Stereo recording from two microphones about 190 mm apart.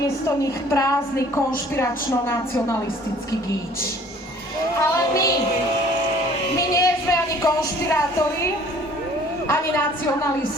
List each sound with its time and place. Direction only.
0.3 s a woman's voice: 15° left (ahead or behind)
4.8 s a woman's voice: 15° left (ahead or behind)
6.6 s a sound: 20° left (ahead or behind)
9.5 s a woman's voice: 10° left (ahead or behind)